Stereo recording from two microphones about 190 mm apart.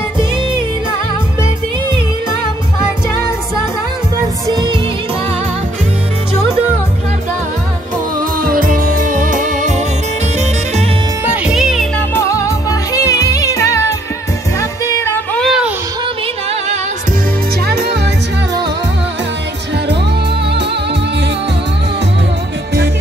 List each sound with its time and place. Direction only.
4.5 s music: 20° right (ahead or behind)
8.4 s music: 45° right (ahead or behind)
11.2 s music: 5° right (ahead or behind)
12.1 s music: 15° left (ahead or behind)
15.4 s a sound: centre (ahead or behind)
17.6 s music: 60° right (ahead or behind)